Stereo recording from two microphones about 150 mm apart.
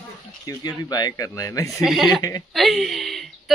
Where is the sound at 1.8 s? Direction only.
Centre (ahead or behind).